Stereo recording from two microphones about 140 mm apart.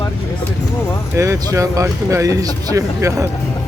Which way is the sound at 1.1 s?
20° right (ahead or behind).